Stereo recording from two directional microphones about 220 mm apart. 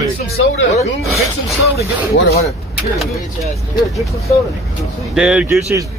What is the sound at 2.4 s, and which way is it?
Speech, centre (ahead or behind).